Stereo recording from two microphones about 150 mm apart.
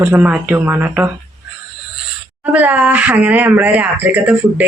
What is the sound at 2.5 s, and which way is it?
Speech, 10° right (ahead or behind).